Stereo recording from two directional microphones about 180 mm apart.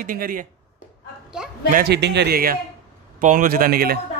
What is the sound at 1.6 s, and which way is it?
Speech, 50° right (ahead or behind).